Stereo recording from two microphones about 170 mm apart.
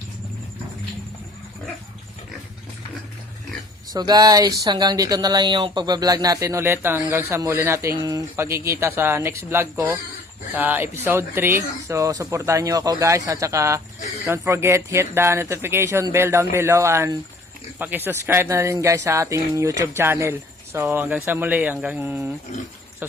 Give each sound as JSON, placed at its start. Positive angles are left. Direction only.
{"t": 3.9, "sound": "speech", "side_deg": -25}